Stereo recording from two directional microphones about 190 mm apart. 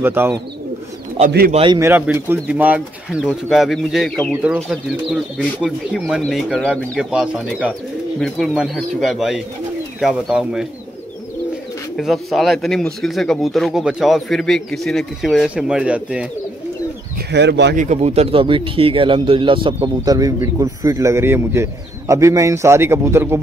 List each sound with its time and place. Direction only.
0.0 s a man's voice: 10° right (ahead or behind)
1.5 s speech: 30° right (ahead or behind)
1.8 s speech: 10° right (ahead or behind)
12.0 s speech: centre (ahead or behind)
17.3 s speech: 65° right (ahead or behind)
17.7 s a man's voice: 35° right (ahead or behind); by 23.4 s 15° right (ahead or behind)